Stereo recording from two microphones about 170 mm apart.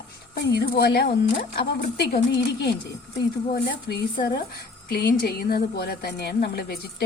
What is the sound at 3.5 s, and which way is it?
A woman's voice, 55° left (ahead or behind).